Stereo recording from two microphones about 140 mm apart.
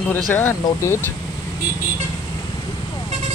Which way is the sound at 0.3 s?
15° left (ahead or behind).